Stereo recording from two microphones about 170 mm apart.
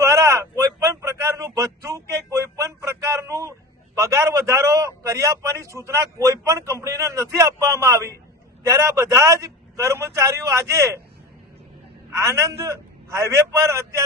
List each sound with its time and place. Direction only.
0.0 s a sound: 20° right (ahead or behind)
3.9 s a man's voice: 20° right (ahead or behind)
12.2 s a man's voice: 20° right (ahead or behind)